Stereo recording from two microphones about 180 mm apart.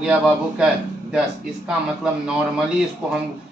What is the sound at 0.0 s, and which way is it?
Speech, 5° right (ahead or behind).